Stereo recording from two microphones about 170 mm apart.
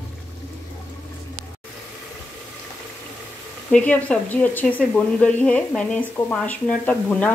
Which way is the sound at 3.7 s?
5° left (ahead or behind).